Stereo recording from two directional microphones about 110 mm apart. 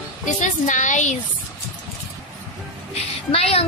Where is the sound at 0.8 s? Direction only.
90° left.